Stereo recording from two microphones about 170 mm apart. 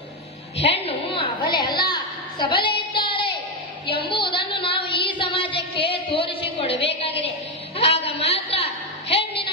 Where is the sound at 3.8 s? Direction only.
30° left (ahead or behind).